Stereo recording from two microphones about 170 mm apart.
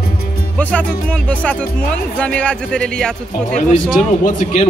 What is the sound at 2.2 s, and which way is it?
Speech, 5° left (ahead or behind).